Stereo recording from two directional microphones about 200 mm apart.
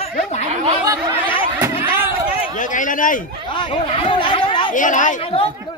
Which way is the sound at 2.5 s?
40° left (ahead or behind).